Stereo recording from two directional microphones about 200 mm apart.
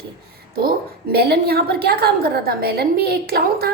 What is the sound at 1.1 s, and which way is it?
A woman's voice, 50° right (ahead or behind).